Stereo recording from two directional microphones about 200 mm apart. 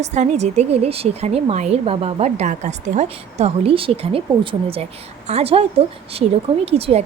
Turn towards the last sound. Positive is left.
turn(degrees=-30)  # may be behind; listen again after turning